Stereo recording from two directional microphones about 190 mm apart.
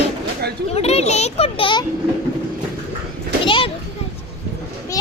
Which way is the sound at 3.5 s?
30° left (ahead or behind).